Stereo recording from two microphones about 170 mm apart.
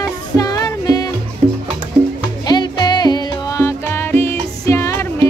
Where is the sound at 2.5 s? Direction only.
25° left (ahead or behind).